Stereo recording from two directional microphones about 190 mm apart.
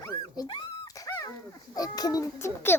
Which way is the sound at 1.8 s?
20° left (ahead or behind).